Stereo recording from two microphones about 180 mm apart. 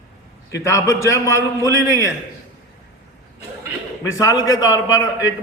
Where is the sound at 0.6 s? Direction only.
15° left (ahead or behind).